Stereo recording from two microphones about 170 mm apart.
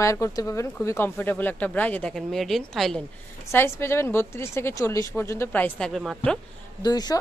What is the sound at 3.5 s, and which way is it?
Speech, 15° left (ahead or behind).